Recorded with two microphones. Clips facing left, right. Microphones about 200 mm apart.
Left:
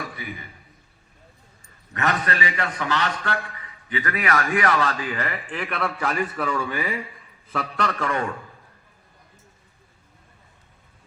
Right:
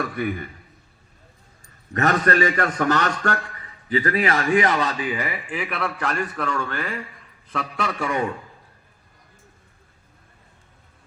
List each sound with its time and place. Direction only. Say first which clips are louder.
0.0 s a man's voice: right 9 dB; 55° right (ahead or behind)
1.9 s a man's voice: right 5 dB; 40° right (ahead or behind); by 8.3 s 10° right (ahead or behind)